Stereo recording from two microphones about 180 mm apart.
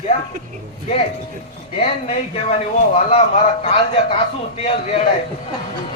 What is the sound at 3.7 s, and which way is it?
Speech, 30° left (ahead or behind).